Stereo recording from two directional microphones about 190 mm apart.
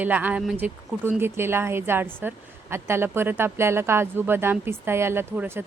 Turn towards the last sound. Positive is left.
turn(degrees=-10)  # may be behind; listen again after turning